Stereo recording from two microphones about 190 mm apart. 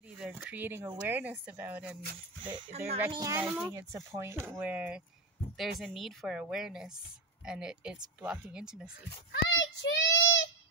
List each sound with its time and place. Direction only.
0.2 s speech: 5° right (ahead or behind)
2.5 s speech: 30° right (ahead or behind)
3.1 s speech: 15° right (ahead or behind)
9.3 s child singing: 70° left (ahead or behind)